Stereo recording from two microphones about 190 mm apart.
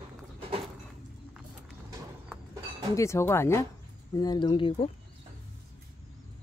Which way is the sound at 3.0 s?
15° left (ahead or behind).